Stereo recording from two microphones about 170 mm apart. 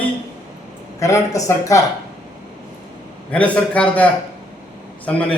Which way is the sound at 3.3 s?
10° left (ahead or behind).